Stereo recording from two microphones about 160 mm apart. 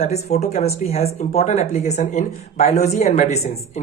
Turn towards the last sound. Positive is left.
turn(degrees=45)  # may be behind; listen again after turning